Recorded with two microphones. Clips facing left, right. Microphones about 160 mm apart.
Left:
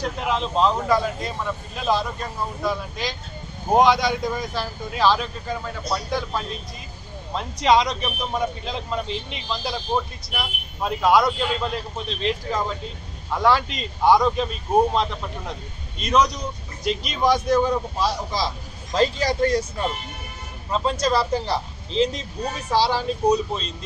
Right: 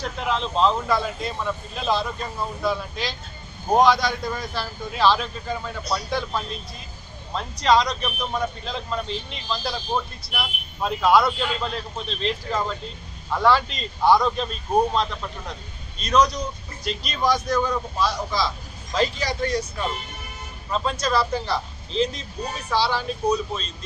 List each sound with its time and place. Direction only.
0.3 s speech: 10° left (ahead or behind)
16.8 s a man's voice: 15° left (ahead or behind); by 19.6 s 45° left (ahead or behind)
20.9 s speech: 35° left (ahead or behind)
23.2 s speech: 20° left (ahead or behind)